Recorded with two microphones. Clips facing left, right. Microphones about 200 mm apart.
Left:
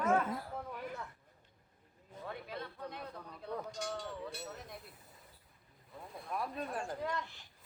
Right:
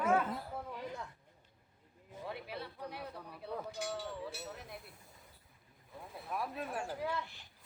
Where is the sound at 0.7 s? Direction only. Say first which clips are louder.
Even; 15° right (ahead or behind).